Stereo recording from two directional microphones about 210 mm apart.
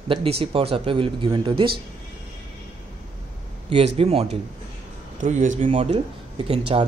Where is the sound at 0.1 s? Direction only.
25° right (ahead or behind).